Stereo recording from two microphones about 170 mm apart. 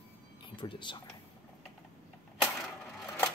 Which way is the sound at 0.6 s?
30° left (ahead or behind).